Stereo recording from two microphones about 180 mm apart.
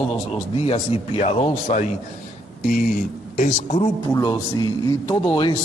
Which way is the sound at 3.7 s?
20° left (ahead or behind).